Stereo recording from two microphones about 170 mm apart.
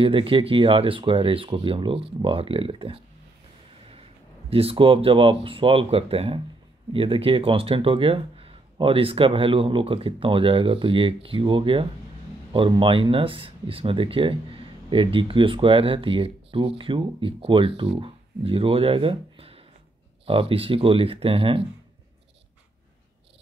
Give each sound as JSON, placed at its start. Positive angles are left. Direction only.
{"t": 0.0, "sound": "speech", "side_deg": -30}
{"t": 4.5, "sound": "speech", "side_deg": -35}